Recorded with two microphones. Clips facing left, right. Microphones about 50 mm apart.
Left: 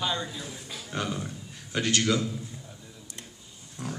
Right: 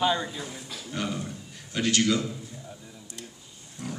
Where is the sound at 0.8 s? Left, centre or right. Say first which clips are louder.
Even; left.